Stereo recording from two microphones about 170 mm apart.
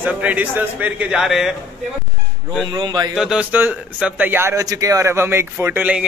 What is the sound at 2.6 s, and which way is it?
Speech, 25° right (ahead or behind).